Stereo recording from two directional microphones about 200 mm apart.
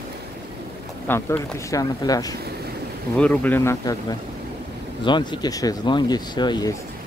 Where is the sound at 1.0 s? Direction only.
10° left (ahead or behind).